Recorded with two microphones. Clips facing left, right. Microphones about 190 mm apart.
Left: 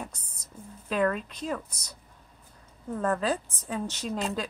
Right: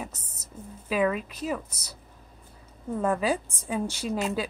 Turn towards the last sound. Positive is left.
turn(degrees=-5)  # may be behind; listen again after turning